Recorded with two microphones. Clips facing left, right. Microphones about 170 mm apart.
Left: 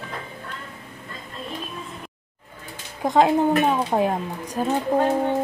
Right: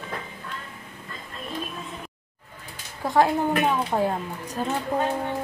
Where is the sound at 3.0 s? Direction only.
20° left (ahead or behind).